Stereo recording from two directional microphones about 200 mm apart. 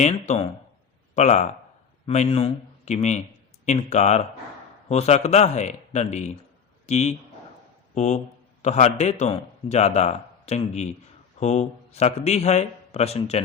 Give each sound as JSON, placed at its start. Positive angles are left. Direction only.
{"t": 0.0, "sound": "a man's voice", "side_deg": 35}